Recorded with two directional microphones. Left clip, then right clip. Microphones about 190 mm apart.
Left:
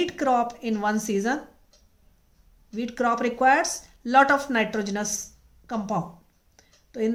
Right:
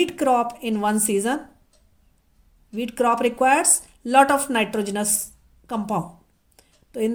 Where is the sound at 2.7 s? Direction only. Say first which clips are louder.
Right 4 dB; 25° right (ahead or behind).